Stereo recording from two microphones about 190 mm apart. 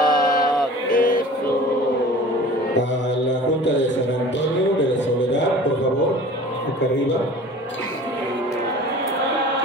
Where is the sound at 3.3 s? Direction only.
70° left (ahead or behind).